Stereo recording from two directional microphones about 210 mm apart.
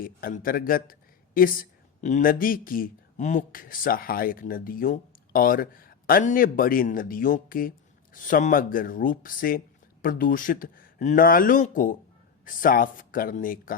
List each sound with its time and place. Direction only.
0.0 s speech: 40° left (ahead or behind)